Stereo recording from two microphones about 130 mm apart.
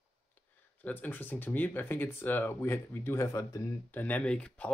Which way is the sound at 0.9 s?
15° left (ahead or behind).